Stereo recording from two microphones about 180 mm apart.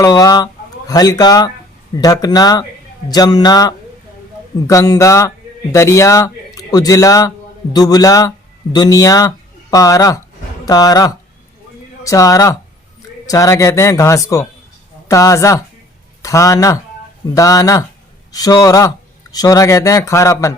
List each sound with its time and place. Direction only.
0.0 s a man's voice: 20° left (ahead or behind)